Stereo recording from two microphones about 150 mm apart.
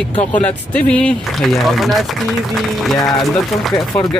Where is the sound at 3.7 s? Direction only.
25° left (ahead or behind).